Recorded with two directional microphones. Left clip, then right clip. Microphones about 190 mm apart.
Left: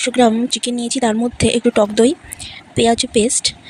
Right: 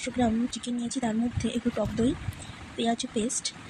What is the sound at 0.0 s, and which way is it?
Speech, 45° left (ahead or behind).